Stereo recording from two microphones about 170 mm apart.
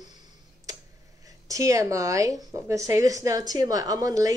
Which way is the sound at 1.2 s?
20° right (ahead or behind).